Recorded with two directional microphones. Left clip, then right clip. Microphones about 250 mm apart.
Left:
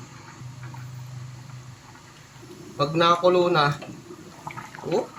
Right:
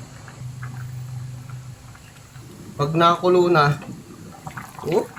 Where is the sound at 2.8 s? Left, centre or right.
Centre.